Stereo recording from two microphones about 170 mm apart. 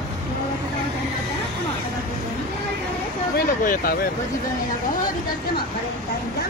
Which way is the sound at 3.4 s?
55° left (ahead or behind).